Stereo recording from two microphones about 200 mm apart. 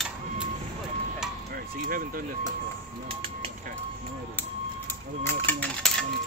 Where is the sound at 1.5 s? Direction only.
45° right (ahead or behind).